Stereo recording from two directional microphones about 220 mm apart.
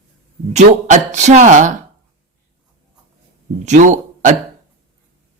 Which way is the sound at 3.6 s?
35° right (ahead or behind).